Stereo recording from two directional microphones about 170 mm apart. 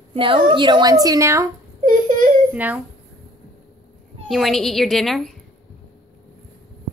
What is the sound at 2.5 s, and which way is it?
Speech, 10° right (ahead or behind).